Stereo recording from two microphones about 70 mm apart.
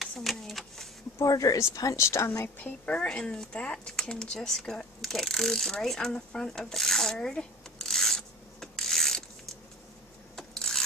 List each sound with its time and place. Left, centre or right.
0.2 s printer: centre
1.2 s speech: left
2.4 s speech: left
3.1 s speech: centre
10.3 s a sound: centre